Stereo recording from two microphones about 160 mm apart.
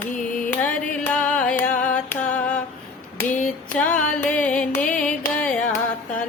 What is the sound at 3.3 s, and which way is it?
Mantra, 55° left (ahead or behind).